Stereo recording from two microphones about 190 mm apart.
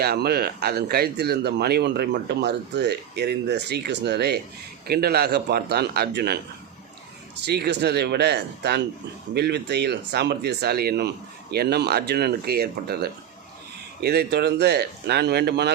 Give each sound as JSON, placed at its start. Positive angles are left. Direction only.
{"t": 0.0, "sound": "speech", "side_deg": -55}
{"t": 7.4, "sound": "speech", "side_deg": -60}